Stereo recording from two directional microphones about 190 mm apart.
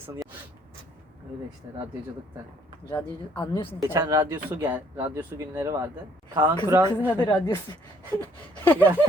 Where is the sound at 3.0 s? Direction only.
10° left (ahead or behind).